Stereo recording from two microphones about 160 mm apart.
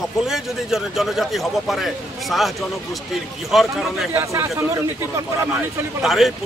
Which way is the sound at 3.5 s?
Centre (ahead or behind).